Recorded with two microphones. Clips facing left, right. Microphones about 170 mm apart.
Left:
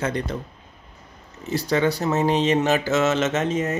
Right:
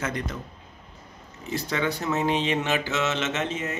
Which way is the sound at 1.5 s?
35° left (ahead or behind).